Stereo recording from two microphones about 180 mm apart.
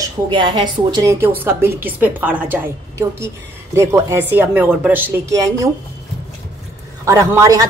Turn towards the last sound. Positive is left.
turn(degrees=-20)  # may be behind; listen again after turning